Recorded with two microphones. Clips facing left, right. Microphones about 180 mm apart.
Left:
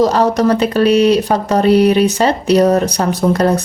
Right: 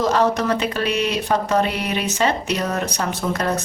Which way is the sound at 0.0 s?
35° left (ahead or behind).